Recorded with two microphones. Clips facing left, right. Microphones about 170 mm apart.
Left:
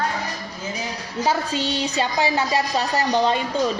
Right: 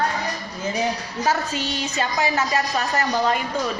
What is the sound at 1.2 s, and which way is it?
A woman's voice, 30° left (ahead or behind).